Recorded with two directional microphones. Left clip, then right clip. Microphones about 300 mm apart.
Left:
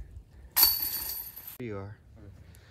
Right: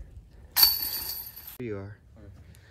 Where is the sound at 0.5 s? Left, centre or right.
Centre.